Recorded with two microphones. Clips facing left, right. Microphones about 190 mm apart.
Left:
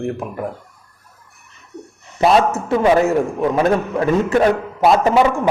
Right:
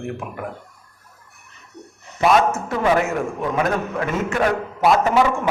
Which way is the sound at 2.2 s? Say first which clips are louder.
Left 2 dB; 30° left (ahead or behind).